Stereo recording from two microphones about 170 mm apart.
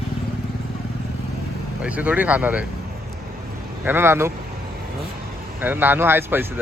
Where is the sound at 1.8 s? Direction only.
10° right (ahead or behind).